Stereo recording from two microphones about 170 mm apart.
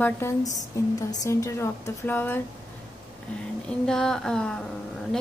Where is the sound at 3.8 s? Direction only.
5° left (ahead or behind).